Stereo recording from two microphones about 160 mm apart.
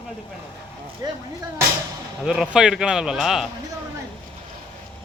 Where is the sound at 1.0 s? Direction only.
25° right (ahead or behind).